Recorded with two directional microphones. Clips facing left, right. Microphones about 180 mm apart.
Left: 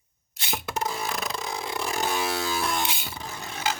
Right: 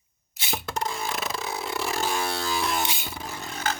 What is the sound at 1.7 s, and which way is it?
Vehicle, 5° right (ahead or behind).